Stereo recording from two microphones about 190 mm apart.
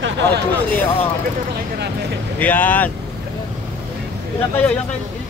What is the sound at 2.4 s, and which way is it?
Speech, 10° left (ahead or behind).